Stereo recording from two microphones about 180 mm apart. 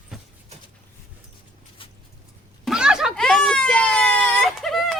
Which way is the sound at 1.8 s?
30° left (ahead or behind).